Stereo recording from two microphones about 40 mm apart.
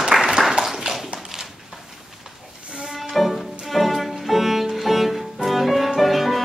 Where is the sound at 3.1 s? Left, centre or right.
Centre.